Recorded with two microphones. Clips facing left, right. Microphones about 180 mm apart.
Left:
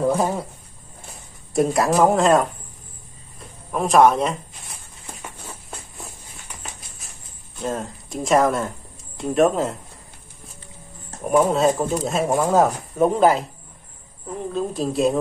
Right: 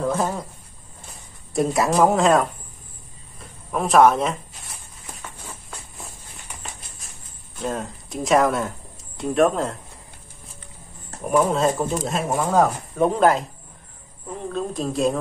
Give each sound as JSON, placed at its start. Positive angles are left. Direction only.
{"t": 0.0, "sound": "speech", "side_deg": 10}
{"t": 1.5, "sound": "speech", "side_deg": 0}
{"t": 7.5, "sound": "speech", "side_deg": 0}
{"t": 11.2, "sound": "speech", "side_deg": 0}
{"t": 14.5, "sound": "speech", "side_deg": 5}